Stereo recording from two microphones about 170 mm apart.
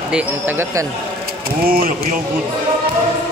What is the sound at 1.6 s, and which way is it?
Speech, 60° right (ahead or behind).